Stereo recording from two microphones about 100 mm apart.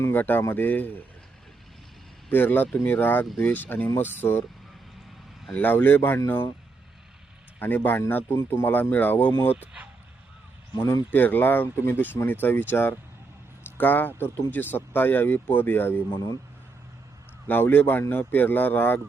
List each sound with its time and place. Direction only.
0.0 s speech: 20° left (ahead or behind)
2.3 s speech: 20° left (ahead or behind)
5.5 s speech: 15° left (ahead or behind)
7.6 s speech: 20° left (ahead or behind)
9.6 s speech: 15° right (ahead or behind)
11.1 s speech: 20° left (ahead or behind)
17.5 s speech: 20° left (ahead or behind)